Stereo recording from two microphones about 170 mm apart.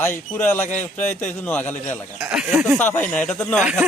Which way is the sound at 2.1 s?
5° right (ahead or behind).